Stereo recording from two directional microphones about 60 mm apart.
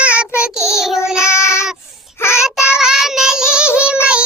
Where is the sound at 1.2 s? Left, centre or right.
Left.